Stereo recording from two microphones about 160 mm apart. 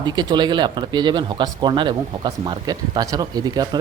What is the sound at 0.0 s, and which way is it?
Speech, 25° right (ahead or behind).